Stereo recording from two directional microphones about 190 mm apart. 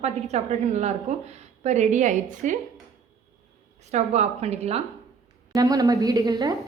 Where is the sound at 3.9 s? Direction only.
35° right (ahead or behind).